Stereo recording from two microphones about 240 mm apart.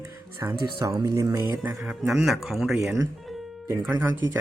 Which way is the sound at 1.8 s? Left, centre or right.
Centre.